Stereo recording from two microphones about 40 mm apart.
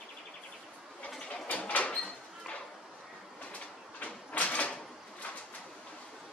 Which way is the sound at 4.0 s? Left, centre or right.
Left.